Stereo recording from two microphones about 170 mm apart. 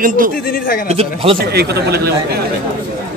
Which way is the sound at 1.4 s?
70° right (ahead or behind).